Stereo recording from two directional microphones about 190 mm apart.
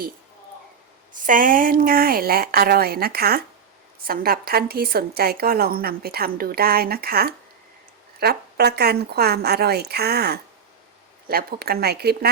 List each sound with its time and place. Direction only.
1.2 s a woman's voice: 45° right (ahead or behind)